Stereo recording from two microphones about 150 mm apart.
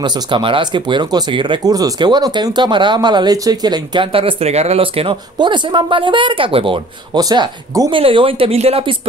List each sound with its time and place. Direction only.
0.0 s speech: 35° right (ahead or behind)
7.9 s speech: 35° right (ahead or behind)